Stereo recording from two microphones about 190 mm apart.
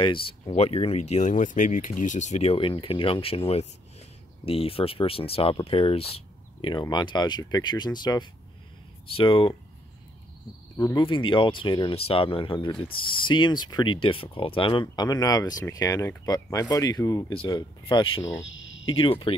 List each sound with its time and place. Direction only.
0.0 s speech: 25° left (ahead or behind)
11.0 s speech: 25° left (ahead or behind)